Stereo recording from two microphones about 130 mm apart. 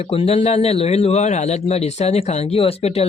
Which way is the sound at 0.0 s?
50° left (ahead or behind).